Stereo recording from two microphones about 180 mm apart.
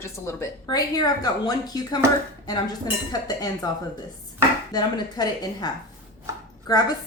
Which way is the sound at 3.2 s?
20° left (ahead or behind).